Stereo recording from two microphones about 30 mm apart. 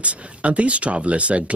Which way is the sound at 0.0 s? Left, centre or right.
Right.